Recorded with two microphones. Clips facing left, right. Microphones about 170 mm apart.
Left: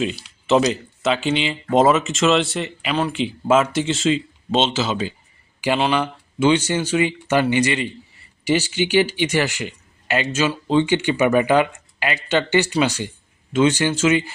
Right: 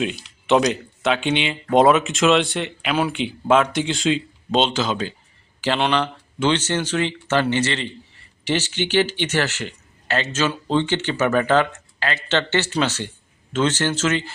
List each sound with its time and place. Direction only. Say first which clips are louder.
0.0 s speech: left 1 dB; centre (ahead or behind)